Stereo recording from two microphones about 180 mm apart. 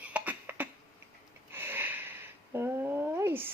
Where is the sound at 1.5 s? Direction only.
10° right (ahead or behind).